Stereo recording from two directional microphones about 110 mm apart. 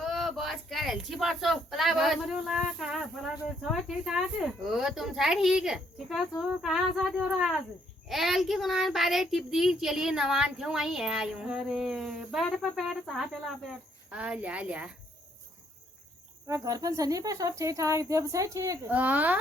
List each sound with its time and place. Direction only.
0.0 s speech: centre (ahead or behind)
14.1 s speech: 10° right (ahead or behind)
16.5 s speech: 30° right (ahead or behind)
18.9 s speech: 15° right (ahead or behind)